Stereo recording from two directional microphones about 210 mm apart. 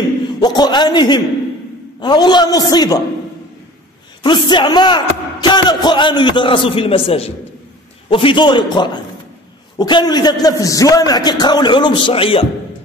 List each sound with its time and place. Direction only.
0.4 s speech: 20° left (ahead or behind)
4.2 s speech: 20° left (ahead or behind)